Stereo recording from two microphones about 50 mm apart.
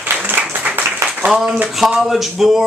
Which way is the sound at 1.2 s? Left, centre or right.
Centre.